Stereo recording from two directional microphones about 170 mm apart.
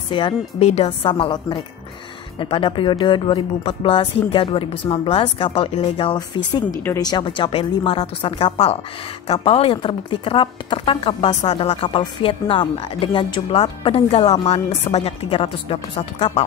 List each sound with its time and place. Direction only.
0.1 s a woman's voice: 30° left (ahead or behind)